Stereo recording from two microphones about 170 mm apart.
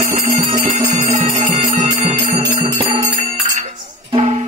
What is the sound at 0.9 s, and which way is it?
Music, 45° right (ahead or behind).